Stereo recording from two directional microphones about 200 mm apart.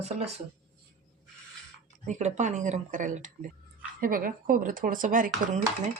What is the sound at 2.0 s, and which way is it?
Speech, 35° right (ahead or behind).